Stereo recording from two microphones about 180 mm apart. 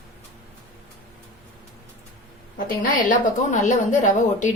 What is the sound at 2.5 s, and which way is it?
A woman's voice, 50° left (ahead or behind).